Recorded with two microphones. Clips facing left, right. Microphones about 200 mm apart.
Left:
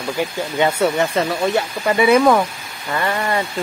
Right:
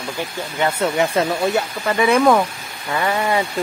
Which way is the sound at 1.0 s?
10° right (ahead or behind).